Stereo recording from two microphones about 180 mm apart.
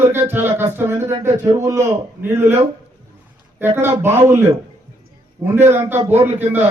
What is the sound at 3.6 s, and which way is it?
Speech, 10° right (ahead or behind).